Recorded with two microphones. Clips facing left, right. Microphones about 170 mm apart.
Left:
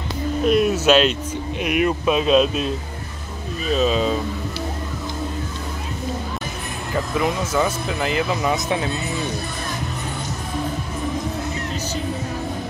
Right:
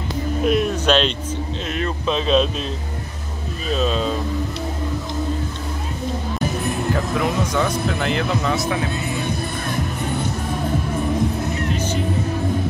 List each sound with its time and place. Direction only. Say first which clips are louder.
0.4 s music: left 2 dB; centre (ahead or behind)
1.6 s speech: left 9 dB; 15° left (ahead or behind)
6.9 s speech: left 2 dB; centre (ahead or behind)
8.5 s speech: right 1 dB; 20° left (ahead or behind)